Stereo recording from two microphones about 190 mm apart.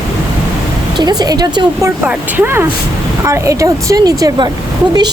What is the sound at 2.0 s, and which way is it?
Speech, 10° right (ahead or behind).